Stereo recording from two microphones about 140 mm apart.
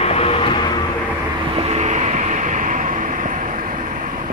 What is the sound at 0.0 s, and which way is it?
Vehicle, 45° left (ahead or behind).